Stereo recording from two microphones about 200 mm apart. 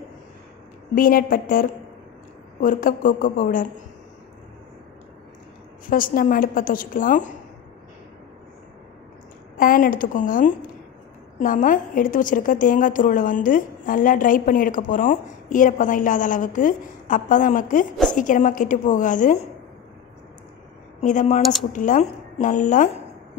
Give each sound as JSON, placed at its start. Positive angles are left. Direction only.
{"t": 0.9, "sound": "a woman's voice", "side_deg": 45}
{"t": 5.9, "sound": "a woman's voice", "side_deg": 45}
{"t": 9.6, "sound": "a woman's voice", "side_deg": 45}
{"t": 21.0, "sound": "a woman's voice", "side_deg": 40}